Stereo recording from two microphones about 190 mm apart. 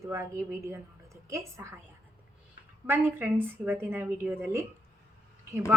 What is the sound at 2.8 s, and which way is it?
A woman's voice, 10° right (ahead or behind).